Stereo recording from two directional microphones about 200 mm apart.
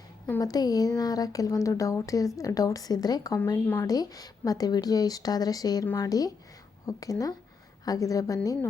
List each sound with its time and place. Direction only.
0.3 s speech: 15° left (ahead or behind)